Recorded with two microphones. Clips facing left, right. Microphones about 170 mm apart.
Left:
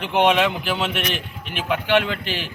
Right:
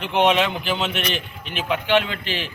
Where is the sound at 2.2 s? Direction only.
10° left (ahead or behind).